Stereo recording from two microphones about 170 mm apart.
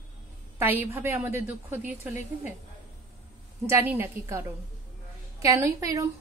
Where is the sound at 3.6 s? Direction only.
15° right (ahead or behind).